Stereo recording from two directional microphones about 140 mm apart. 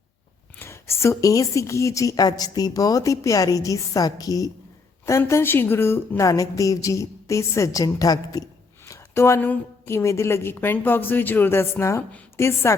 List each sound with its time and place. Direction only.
0.5 s a woman's voice: 15° left (ahead or behind)